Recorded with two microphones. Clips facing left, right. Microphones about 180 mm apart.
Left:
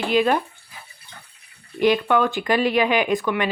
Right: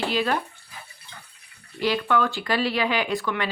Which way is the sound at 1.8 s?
20° left (ahead or behind).